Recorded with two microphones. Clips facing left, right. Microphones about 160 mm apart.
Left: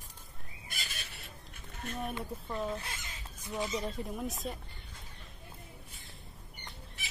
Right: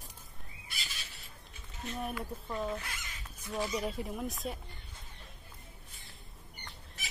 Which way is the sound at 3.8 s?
5° right (ahead or behind).